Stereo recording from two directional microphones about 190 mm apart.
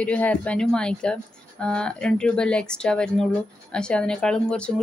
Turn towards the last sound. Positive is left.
turn(degrees=5)  # may be behind; listen again after turning